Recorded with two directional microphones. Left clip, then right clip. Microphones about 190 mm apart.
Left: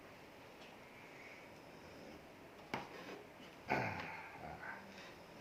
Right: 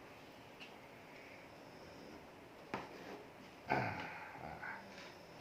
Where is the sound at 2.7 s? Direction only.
35° left (ahead or behind).